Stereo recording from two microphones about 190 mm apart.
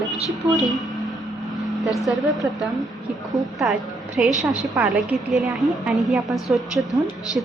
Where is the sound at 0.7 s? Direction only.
Centre (ahead or behind).